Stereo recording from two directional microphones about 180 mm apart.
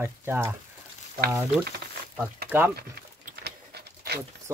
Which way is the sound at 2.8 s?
60° right (ahead or behind).